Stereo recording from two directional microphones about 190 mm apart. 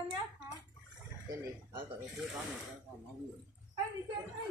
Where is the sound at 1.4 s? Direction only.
15° right (ahead or behind).